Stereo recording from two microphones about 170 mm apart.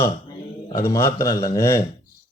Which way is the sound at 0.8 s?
20° left (ahead or behind).